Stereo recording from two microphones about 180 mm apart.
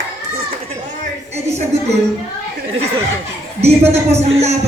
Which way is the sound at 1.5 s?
35° right (ahead or behind).